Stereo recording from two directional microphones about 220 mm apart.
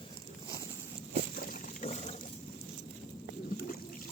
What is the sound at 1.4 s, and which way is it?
Boat, 40° left (ahead or behind).